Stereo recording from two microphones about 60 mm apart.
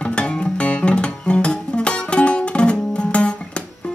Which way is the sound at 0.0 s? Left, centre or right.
Centre.